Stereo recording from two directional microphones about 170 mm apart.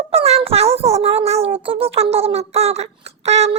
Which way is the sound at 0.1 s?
35° right (ahead or behind).